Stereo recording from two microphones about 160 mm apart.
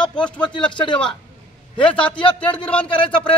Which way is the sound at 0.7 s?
30° left (ahead or behind).